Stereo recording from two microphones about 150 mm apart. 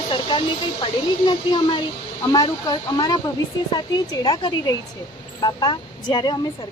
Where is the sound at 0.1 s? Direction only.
35° left (ahead or behind).